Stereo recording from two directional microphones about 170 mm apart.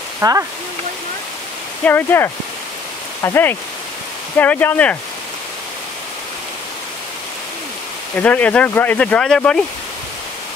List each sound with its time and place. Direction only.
0.2 s speech: 20° right (ahead or behind)
1.9 s speech: 10° left (ahead or behind)
8.2 s speech: 10° left (ahead or behind)